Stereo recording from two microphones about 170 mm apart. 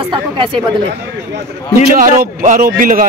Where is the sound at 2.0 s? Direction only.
50° right (ahead or behind).